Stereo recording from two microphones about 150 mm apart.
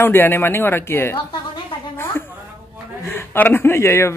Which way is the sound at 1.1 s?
30° left (ahead or behind).